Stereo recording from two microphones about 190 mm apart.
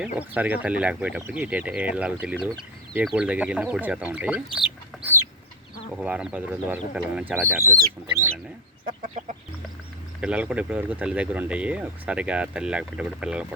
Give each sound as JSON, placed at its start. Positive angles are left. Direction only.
{"t": 0.0, "sound": "speech", "side_deg": -5}
{"t": 6.0, "sound": "speech", "side_deg": -5}
{"t": 9.0, "sound": "chicken", "side_deg": -40}
{"t": 10.2, "sound": "speech", "side_deg": -5}